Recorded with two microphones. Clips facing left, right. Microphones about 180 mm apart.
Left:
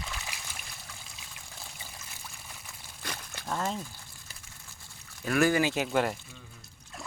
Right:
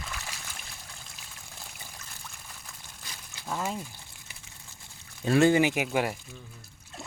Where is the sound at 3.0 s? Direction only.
65° left (ahead or behind).